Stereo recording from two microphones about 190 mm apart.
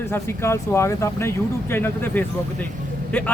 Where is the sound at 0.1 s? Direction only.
15° left (ahead or behind).